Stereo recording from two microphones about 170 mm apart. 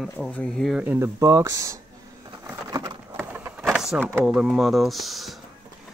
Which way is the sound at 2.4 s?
20° right (ahead or behind).